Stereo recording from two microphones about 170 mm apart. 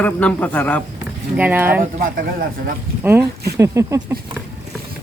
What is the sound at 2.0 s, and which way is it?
Speech, 55° right (ahead or behind).